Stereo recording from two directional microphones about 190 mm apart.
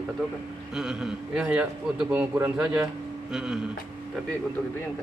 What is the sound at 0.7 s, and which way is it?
Speech, 5° right (ahead or behind).